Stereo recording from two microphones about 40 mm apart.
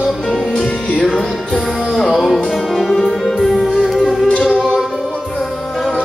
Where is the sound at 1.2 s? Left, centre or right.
Left.